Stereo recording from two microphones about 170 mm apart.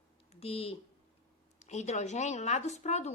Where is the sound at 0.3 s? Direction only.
35° left (ahead or behind).